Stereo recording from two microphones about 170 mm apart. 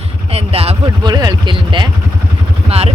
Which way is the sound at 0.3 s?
35° right (ahead or behind).